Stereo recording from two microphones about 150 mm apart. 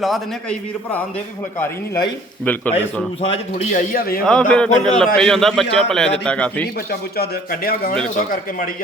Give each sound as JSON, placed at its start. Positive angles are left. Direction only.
{"t": 0.0, "sound": "a man's voice", "side_deg": 0}
{"t": 2.4, "sound": "speech", "side_deg": 10}
{"t": 2.7, "sound": "a man's voice", "side_deg": 40}
{"t": 3.9, "sound": "a man's voice", "side_deg": 80}
{"t": 4.3, "sound": "a man's voice", "side_deg": 5}
{"t": 7.2, "sound": "a man's voice", "side_deg": 90}